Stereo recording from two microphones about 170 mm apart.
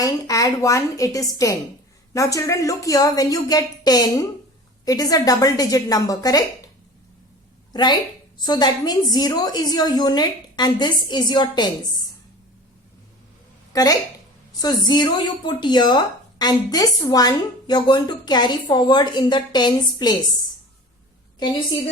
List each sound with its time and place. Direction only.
0.0 s speech: 20° left (ahead or behind)
7.7 s a woman's voice: 25° left (ahead or behind)
13.7 s speech: 20° left (ahead or behind)